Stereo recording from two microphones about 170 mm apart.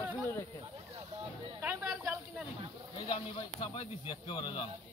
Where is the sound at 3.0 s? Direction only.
30° left (ahead or behind).